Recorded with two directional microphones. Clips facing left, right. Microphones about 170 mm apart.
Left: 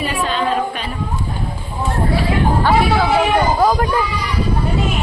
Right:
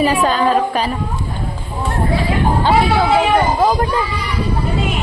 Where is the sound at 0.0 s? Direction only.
40° right (ahead or behind).